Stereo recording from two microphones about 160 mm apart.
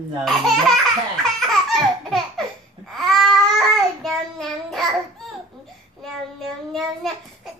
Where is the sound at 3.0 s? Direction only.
Centre (ahead or behind).